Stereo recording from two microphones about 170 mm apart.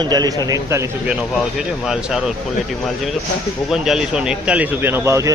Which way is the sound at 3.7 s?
5° right (ahead or behind).